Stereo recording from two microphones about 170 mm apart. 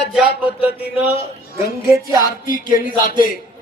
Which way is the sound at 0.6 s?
10° right (ahead or behind).